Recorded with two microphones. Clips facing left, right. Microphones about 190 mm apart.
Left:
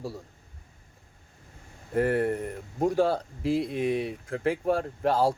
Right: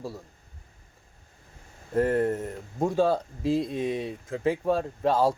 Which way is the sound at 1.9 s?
10° left (ahead or behind).